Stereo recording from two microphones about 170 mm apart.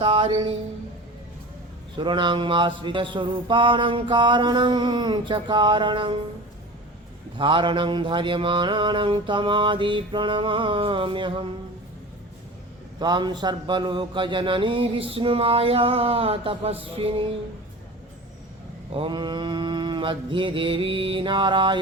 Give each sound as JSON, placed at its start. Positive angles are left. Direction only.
{"t": 0.0, "sound": "a sound", "side_deg": -30}
{"t": 2.0, "sound": "mantra", "side_deg": -30}
{"t": 7.3, "sound": "mantra", "side_deg": -30}
{"t": 13.0, "sound": "mantra", "side_deg": -25}
{"t": 15.1, "sound": "a sound", "side_deg": -35}
{"t": 18.9, "sound": "mantra", "side_deg": -30}